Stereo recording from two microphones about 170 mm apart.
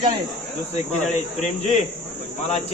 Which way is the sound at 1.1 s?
45° left (ahead or behind).